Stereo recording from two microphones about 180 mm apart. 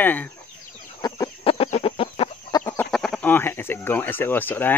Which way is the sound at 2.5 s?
20° left (ahead or behind).